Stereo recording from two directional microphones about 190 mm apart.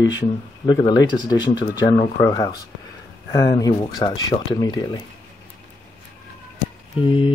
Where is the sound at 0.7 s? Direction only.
20° left (ahead or behind).